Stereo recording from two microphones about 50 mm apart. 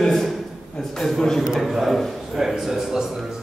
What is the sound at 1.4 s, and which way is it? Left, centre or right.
A man's voice, centre.